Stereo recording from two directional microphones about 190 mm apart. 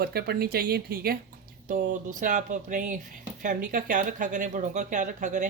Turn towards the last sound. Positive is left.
turn(degrees=-40)  # may be behind; listen again after turning